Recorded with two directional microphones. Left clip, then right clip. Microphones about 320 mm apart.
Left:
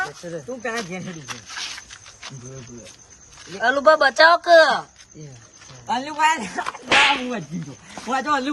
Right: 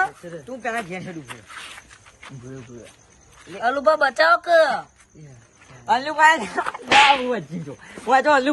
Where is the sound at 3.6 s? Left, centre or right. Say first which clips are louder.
Left 3 dB; centre.